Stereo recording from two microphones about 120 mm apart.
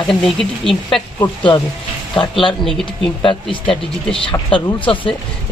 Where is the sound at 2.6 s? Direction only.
Centre (ahead or behind).